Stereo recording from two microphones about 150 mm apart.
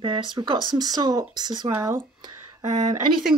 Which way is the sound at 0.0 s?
30° right (ahead or behind).